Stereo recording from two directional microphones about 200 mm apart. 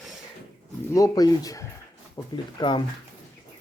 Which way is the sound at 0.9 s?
20° left (ahead or behind).